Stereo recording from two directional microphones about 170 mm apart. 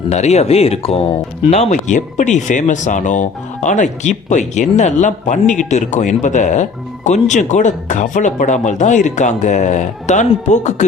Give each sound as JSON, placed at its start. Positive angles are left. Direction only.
{"t": 0.1, "sound": "speech", "side_deg": 40}